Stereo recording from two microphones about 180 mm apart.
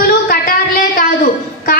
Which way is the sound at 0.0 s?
55° left (ahead or behind).